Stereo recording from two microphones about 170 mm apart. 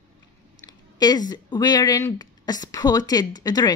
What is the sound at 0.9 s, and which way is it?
A woman's voice, 25° left (ahead or behind).